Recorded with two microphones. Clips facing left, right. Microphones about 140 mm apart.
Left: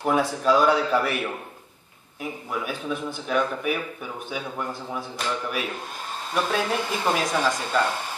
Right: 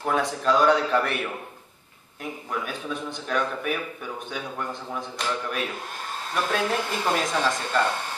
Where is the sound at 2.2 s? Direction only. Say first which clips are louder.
Left 1 dB; 5° left (ahead or behind).